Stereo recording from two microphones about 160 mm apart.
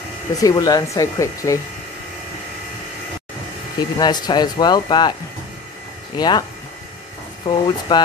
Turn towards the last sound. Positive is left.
turn(degrees=25)  # may be behind; listen again after turning